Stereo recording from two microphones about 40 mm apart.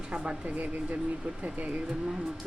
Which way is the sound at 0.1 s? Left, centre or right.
Right.